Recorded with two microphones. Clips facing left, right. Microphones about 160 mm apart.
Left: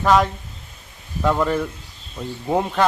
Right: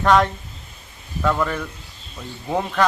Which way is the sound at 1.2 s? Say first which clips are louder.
Left 2 dB; 20° left (ahead or behind).